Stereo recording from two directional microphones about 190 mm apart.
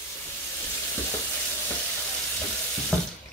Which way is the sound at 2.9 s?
5° left (ahead or behind).